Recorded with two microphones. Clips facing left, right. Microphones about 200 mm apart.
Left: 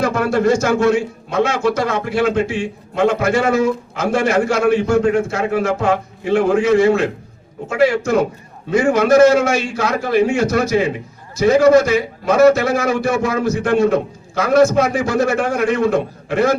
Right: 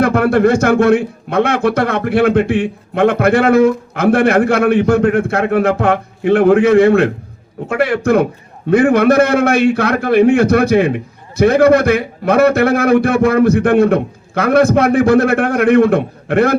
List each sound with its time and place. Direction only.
0.0 s a man's voice: 60° right (ahead or behind)